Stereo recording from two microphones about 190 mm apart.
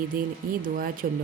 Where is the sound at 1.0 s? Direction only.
45° right (ahead or behind).